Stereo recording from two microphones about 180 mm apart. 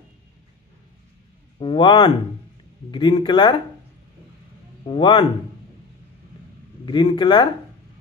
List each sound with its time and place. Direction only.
1.6 s speech: 25° left (ahead or behind)
4.8 s speech: 25° left (ahead or behind)
6.9 s speech: 25° left (ahead or behind)